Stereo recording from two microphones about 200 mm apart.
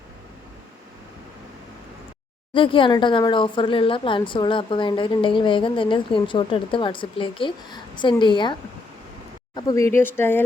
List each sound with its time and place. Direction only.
2.5 s speech: 25° left (ahead or behind)
9.6 s speech: 15° left (ahead or behind)